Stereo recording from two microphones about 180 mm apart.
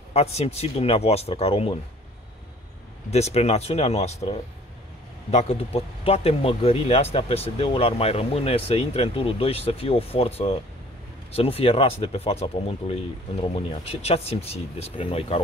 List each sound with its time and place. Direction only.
0.1 s speech: 35° left (ahead or behind)
3.1 s speech: 35° left (ahead or behind)